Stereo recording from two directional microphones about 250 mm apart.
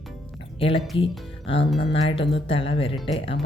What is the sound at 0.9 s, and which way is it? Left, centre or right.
Speech, left.